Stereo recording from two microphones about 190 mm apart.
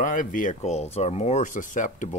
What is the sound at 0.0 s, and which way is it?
Speech, 45° left (ahead or behind).